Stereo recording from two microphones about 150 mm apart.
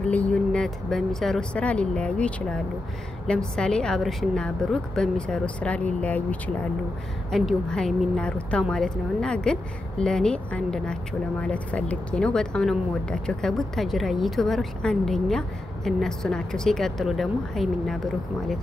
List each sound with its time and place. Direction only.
0.1 s speech: 10° left (ahead or behind)